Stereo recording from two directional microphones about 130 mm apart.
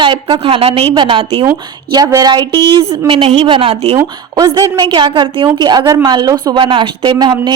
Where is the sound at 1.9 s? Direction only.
30° right (ahead or behind).